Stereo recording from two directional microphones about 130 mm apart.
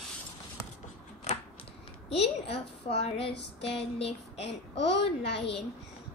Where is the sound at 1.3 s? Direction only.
65° left (ahead or behind).